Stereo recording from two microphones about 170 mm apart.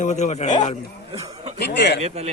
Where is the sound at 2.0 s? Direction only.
40° right (ahead or behind).